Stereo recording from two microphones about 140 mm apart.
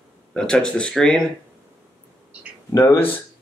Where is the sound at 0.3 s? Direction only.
5° left (ahead or behind).